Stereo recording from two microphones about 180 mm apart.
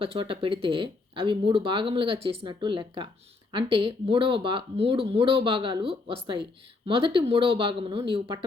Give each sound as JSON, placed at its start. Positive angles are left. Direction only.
{"t": 0.0, "sound": "speech", "side_deg": -30}